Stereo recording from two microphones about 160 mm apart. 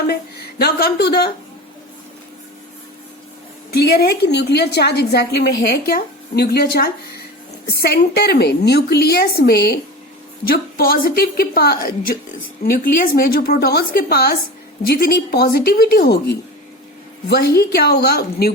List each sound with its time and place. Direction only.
0.1 s a woman's voice: 80° left
3.7 s a woman's voice: 80° left